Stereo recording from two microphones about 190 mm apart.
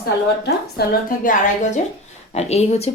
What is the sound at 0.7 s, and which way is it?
A woman's voice, 50° left (ahead or behind).